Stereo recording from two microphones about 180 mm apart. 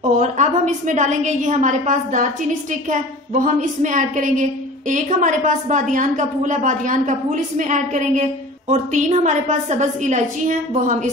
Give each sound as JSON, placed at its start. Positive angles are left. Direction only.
{"t": 0.2, "sound": "a woman's voice", "side_deg": -40}